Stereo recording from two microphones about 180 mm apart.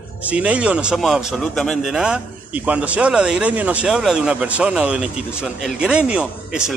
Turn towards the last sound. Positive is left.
turn(degrees=-5)  # may be behind; listen again after turning